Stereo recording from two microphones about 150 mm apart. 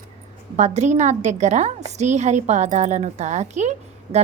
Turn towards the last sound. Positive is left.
turn(degrees=-50)  # may be behind; listen again after turning